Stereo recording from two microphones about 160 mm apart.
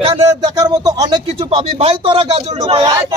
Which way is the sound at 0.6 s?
25° right (ahead or behind).